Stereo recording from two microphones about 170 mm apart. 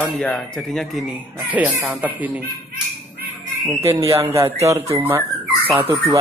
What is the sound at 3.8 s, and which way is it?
Speech, 15° right (ahead or behind).